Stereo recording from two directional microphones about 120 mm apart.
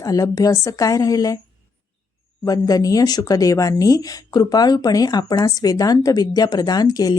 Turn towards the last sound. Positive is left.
turn(degrees=35)  # may be behind; listen again after turning